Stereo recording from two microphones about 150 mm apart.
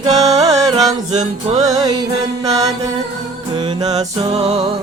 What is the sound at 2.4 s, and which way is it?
Music, 25° right (ahead or behind).